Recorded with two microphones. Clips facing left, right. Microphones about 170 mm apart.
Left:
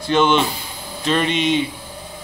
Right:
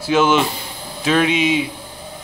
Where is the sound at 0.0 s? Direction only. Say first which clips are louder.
Right 1 dB; 5° right (ahead or behind).